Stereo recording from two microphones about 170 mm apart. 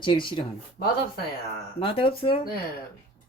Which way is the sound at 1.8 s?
30° left (ahead or behind).